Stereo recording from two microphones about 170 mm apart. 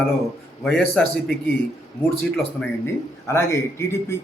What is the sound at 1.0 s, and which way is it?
Speech, 5° left (ahead or behind).